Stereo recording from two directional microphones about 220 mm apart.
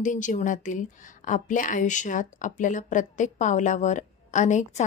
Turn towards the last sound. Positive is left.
turn(degrees=35)  # may be behind; listen again after turning